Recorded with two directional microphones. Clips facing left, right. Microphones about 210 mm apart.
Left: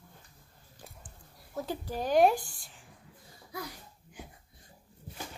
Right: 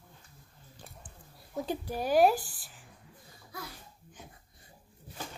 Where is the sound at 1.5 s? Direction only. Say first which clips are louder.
Right 1 dB; 15° right (ahead or behind).